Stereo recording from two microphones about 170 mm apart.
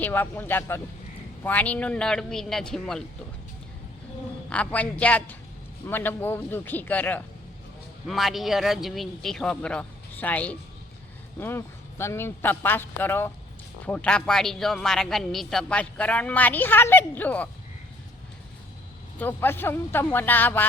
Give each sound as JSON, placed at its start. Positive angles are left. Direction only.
{"t": 0.0, "sound": "speech", "side_deg": 10}
{"t": 4.4, "sound": "speech", "side_deg": 5}
{"t": 8.0, "sound": "speech", "side_deg": 0}
{"t": 19.2, "sound": "speech", "side_deg": 10}